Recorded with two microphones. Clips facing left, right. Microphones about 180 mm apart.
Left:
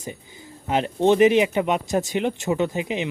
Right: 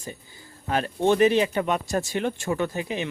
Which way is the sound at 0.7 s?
20° left (ahead or behind).